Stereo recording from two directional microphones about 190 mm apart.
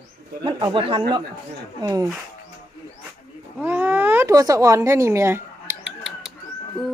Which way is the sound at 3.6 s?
10° right (ahead or behind).